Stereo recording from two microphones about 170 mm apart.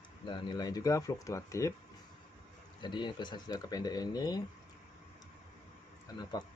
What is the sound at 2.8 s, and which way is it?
Speech, 25° left (ahead or behind).